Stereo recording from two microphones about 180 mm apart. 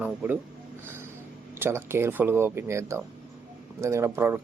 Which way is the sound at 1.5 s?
15° right (ahead or behind).